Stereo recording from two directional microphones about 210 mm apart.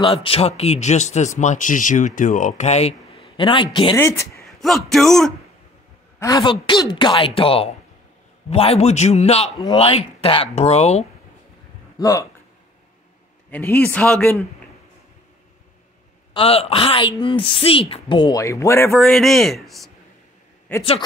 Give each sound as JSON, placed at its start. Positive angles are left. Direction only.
{"t": 0.0, "sound": "speech", "side_deg": 25}
{"t": 3.9, "sound": "speech", "side_deg": 15}
{"t": 4.5, "sound": "a man's voice", "side_deg": 0}
{"t": 6.1, "sound": "a woman's voice", "side_deg": 15}
{"t": 12.0, "sound": "speech", "side_deg": 15}
{"t": 13.5, "sound": "speech", "side_deg": 10}
{"t": 16.3, "sound": "a woman's voice", "side_deg": 25}
{"t": 18.9, "sound": "a man's voice", "side_deg": 0}